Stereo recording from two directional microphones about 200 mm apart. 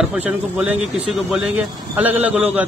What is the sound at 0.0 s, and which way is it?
A man's voice, 5° right (ahead or behind).